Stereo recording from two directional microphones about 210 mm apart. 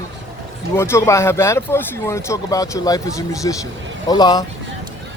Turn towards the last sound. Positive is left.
turn(degrees=20)  # may be behind; listen again after turning